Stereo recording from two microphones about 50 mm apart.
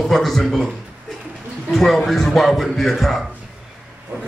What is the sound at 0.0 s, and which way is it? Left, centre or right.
Speech, centre.